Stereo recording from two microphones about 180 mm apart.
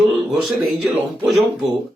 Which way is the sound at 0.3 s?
Centre (ahead or behind).